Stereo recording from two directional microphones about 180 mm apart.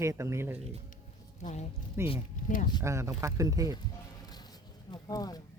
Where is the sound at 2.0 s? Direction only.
15° right (ahead or behind).